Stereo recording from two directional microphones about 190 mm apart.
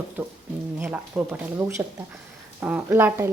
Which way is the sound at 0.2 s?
10° right (ahead or behind).